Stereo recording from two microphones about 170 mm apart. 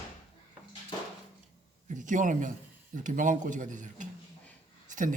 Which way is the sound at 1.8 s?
50° right (ahead or behind).